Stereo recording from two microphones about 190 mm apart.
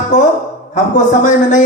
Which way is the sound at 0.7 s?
40° left (ahead or behind).